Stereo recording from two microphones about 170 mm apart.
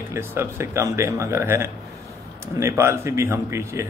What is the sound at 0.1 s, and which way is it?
Speech, 15° right (ahead or behind).